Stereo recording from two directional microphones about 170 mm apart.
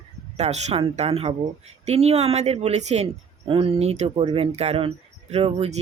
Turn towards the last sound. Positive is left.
turn(degrees=-35)  # may be behind; listen again after turning